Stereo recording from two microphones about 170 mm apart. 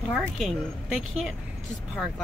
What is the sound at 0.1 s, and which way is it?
A woman's voice, centre (ahead or behind).